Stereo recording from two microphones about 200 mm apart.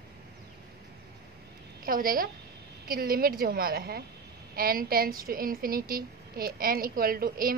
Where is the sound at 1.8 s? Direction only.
45° right (ahead or behind).